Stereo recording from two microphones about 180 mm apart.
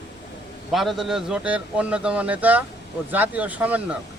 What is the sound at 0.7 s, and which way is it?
Speech, centre (ahead or behind).